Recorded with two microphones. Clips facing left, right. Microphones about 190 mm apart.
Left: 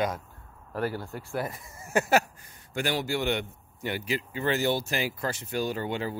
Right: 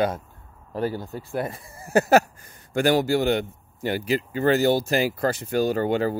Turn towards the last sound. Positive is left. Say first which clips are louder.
# right 8 dB
turn(degrees=-45)  # may be behind; listen again after turning